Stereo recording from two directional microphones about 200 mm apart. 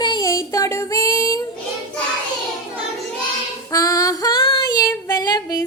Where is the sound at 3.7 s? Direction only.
15° left (ahead or behind).